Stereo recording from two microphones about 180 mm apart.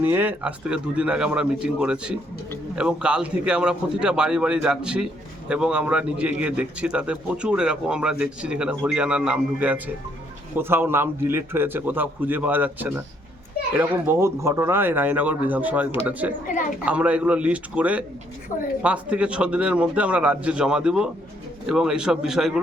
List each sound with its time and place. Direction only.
0.0 s a man's voice: 10° right (ahead or behind)
16.5 s a woman's voice: 45° left (ahead or behind)
16.8 s a man's voice: 5° right (ahead or behind)